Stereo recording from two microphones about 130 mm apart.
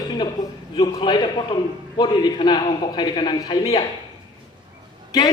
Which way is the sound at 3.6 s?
45° left (ahead or behind).